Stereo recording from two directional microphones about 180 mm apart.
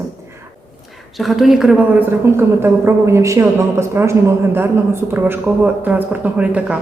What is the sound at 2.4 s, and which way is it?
Speech, 15° right (ahead or behind).